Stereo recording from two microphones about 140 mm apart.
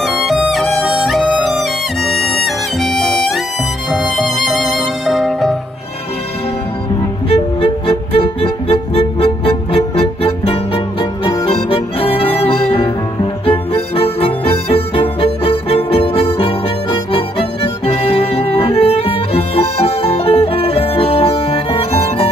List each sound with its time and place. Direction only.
0.0 s music: centre (ahead or behind)
7.2 s music: 45° left (ahead or behind)